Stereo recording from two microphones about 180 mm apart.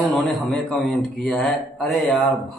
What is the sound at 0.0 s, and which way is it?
Speech, centre (ahead or behind).